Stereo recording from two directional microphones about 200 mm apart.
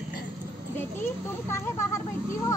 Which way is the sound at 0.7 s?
10° left (ahead or behind).